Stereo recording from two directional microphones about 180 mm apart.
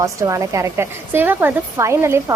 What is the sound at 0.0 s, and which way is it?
A woman's voice, 15° right (ahead or behind).